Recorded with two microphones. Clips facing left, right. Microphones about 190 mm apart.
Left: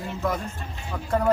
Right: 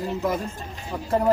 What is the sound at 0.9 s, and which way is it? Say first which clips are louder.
Speech: right 2 dB; 20° right (ahead or behind).